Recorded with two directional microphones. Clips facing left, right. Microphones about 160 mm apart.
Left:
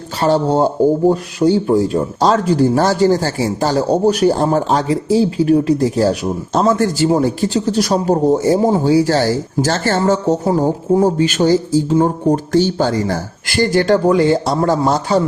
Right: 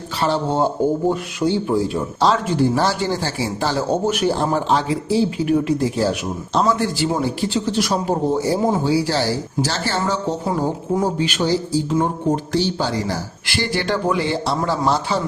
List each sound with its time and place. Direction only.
0.2 s speech: 40° left (ahead or behind)
10.5 s speech: 35° left (ahead or behind)
11.2 s speech: 45° left (ahead or behind)
11.9 s speech: 30° left (ahead or behind)
12.5 s speech: 50° left (ahead or behind)